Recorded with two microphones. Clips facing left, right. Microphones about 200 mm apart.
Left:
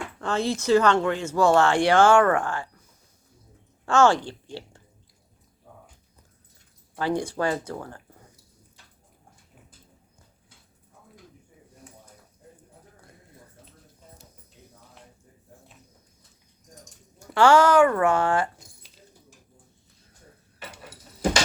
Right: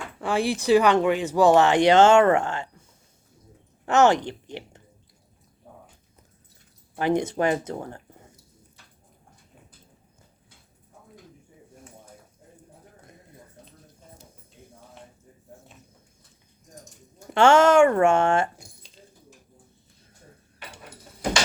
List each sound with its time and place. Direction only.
0.2 s speech: 15° right (ahead or behind)
3.8 s speech: 20° right (ahead or behind)
6.9 s speech: 20° right (ahead or behind)
17.2 s speech: 25° right (ahead or behind)